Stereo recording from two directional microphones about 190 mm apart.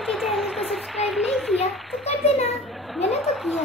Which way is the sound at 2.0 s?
35° left (ahead or behind).